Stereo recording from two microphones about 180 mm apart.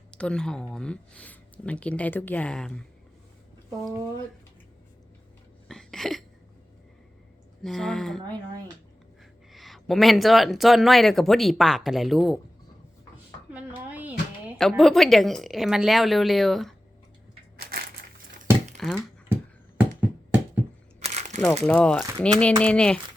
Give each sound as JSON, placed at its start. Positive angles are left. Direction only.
{"t": 0.1, "sound": "speech", "side_deg": 5}
{"t": 5.6, "sound": "a sound", "side_deg": 0}
{"t": 7.6, "sound": "speech", "side_deg": 0}
{"t": 9.5, "sound": "speech", "side_deg": 0}
{"t": 13.5, "sound": "a sound", "side_deg": -10}
{"t": 14.6, "sound": "speech", "side_deg": 0}
{"t": 17.6, "sound": "crushing", "side_deg": -55}
{"t": 18.8, "sound": "a sound", "side_deg": 0}
{"t": 21.0, "sound": "crumpling", "side_deg": -40}
{"t": 21.6, "sound": "speech", "side_deg": 5}